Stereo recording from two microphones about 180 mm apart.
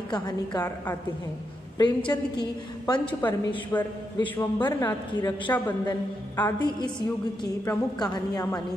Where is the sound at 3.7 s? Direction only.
20° left (ahead or behind).